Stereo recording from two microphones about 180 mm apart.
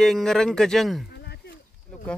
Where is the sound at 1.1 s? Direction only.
65° left (ahead or behind).